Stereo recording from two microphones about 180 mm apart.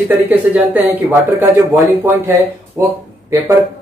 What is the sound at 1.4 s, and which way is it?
Speech, 15° right (ahead or behind).